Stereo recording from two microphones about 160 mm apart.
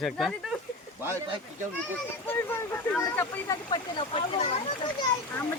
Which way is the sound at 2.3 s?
15° left (ahead or behind).